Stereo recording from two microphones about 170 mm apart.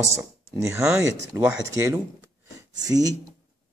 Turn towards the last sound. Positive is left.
turn(degrees=-20)  # may be behind; listen again after turning